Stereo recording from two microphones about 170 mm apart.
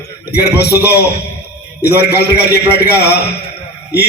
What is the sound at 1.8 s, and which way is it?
A man's voice, 70° left (ahead or behind).